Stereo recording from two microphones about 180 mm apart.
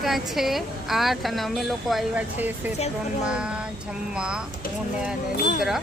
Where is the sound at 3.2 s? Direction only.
5° right (ahead or behind).